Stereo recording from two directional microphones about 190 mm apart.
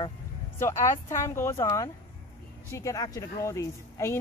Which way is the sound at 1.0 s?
15° left (ahead or behind).